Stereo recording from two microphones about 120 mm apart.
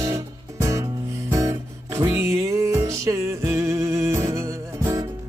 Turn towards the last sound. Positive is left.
turn(degrees=-25)  # may be behind; listen again after turning